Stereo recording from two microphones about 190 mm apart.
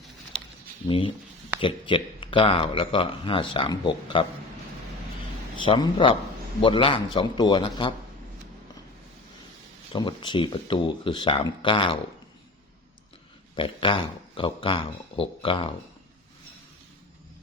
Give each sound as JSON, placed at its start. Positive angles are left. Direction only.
{"t": 0.9, "sound": "speech", "side_deg": 25}
{"t": 5.6, "sound": "speech", "side_deg": 25}
{"t": 9.9, "sound": "speech", "side_deg": 25}
{"t": 13.6, "sound": "speech", "side_deg": 25}